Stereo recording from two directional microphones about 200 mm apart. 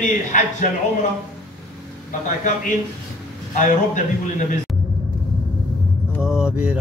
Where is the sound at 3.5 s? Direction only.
40° left (ahead or behind).